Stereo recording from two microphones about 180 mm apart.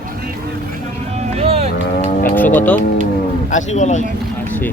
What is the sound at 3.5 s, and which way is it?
Speech, 40° left (ahead or behind).